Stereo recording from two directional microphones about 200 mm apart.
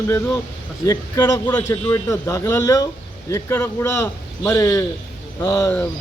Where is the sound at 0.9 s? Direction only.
15° left (ahead or behind).